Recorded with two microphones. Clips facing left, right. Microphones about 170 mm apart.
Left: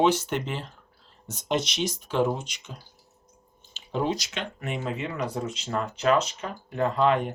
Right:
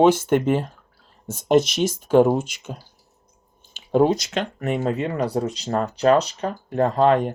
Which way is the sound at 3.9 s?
50° right (ahead or behind).